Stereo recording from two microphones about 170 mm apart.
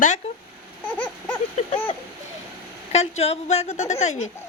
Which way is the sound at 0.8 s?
10° left (ahead or behind).